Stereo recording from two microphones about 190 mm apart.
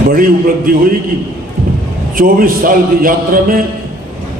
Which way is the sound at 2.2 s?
50° right (ahead or behind).